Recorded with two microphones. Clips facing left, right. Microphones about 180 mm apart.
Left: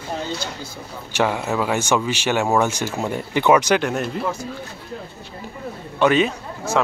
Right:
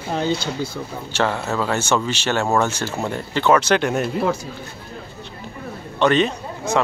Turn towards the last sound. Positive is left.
turn(degrees=5)  # may be behind; listen again after turning